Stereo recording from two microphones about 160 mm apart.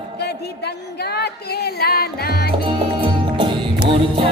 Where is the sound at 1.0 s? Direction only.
85° left.